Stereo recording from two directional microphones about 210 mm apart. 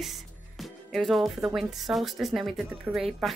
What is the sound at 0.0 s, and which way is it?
Speech, centre (ahead or behind).